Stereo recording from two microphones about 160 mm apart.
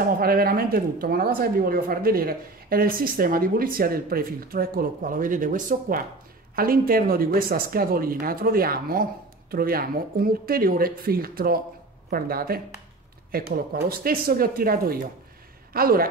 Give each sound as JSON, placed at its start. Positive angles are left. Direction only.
{"t": 0.0, "sound": "speech", "side_deg": -65}